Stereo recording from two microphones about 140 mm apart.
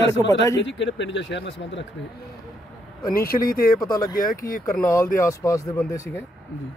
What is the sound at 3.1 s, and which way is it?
Speech, 90° left.